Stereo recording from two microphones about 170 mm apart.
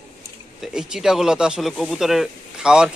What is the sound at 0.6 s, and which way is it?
Speech, 5° right (ahead or behind).